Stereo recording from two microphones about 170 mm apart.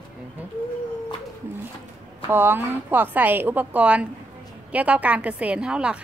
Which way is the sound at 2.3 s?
10° right (ahead or behind).